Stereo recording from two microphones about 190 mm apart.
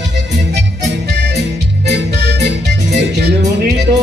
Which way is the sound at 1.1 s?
65° right (ahead or behind).